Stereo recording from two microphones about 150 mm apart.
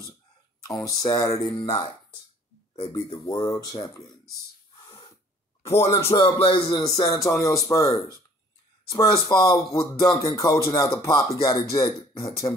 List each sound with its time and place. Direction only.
0.6 s speech: 20° left (ahead or behind)
4.8 s snort: 35° left (ahead or behind)
5.9 s music: 40° left (ahead or behind)
7.0 s speech: 20° left (ahead or behind)